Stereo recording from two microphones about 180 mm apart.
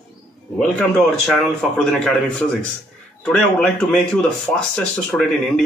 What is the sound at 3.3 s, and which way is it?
A man's voice, 5° left (ahead or behind).